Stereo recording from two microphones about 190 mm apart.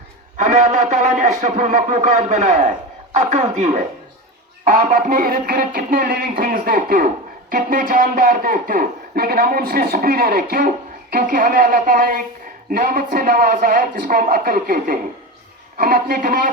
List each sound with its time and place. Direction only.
0.3 s a man's voice: 40° right (ahead or behind)